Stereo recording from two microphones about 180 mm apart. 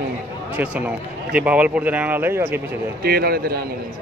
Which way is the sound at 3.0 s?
60° right (ahead or behind).